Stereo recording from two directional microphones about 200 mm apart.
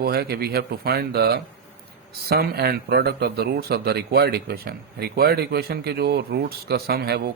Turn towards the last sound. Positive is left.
turn(degrees=-55)  # may be behind; listen again after turning